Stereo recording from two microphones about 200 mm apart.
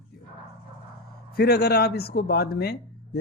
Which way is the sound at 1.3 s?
55° left (ahead or behind).